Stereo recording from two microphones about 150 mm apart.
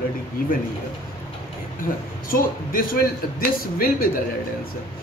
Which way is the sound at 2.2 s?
70° left (ahead or behind).